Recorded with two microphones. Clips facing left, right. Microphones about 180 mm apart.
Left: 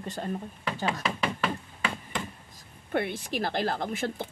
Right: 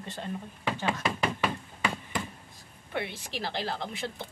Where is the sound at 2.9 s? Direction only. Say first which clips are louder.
Left 6 dB; 50° left (ahead or behind).